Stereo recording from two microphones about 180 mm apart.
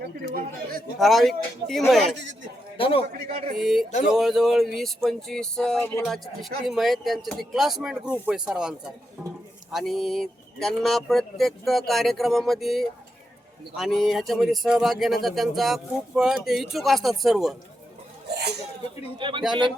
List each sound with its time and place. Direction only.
0.0 s speech: 55° right (ahead or behind)
0.9 s speech: centre (ahead or behind)
2.7 s a man's voice: 30° left (ahead or behind)
3.6 s speech: centre (ahead or behind)
18.3 s speech: 65° right (ahead or behind)
19.2 s a man's voice: 25° right (ahead or behind)